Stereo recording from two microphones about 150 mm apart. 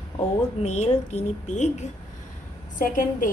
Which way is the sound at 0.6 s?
45° left (ahead or behind).